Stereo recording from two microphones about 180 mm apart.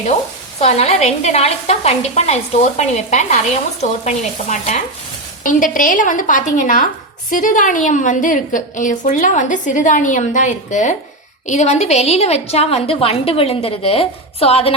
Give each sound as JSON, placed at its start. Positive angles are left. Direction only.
{"t": 0.6, "sound": "a woman's voice", "side_deg": 35}